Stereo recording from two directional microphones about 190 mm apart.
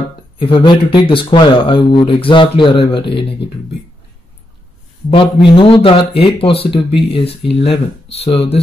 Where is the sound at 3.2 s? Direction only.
65° left (ahead or behind).